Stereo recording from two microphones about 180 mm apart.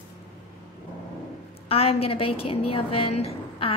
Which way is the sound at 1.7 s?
35° left (ahead or behind).